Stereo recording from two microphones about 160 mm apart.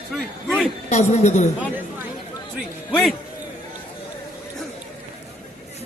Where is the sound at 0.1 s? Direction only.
Centre (ahead or behind).